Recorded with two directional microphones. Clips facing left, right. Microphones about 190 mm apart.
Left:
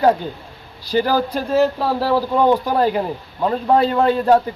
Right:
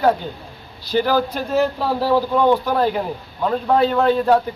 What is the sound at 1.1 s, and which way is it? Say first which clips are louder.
Speech: even; 35° left (ahead or behind).